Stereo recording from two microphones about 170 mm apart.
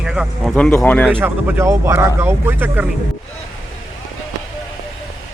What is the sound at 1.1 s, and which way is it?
Speech, 10° right (ahead or behind).